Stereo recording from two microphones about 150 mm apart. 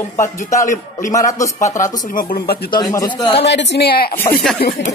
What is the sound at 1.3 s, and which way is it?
Speech, 20° left (ahead or behind).